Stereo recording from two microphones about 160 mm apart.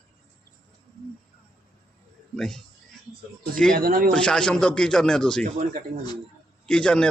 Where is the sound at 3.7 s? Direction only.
65° right (ahead or behind).